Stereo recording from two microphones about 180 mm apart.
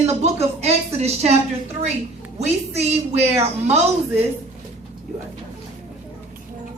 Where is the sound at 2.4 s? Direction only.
35° right (ahead or behind).